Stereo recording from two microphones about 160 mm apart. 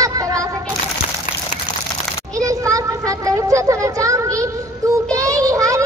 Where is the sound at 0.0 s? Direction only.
20° right (ahead or behind).